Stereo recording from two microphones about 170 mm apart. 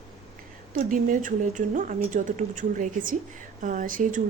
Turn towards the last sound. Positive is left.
turn(degrees=-50)  # may be behind; listen again after turning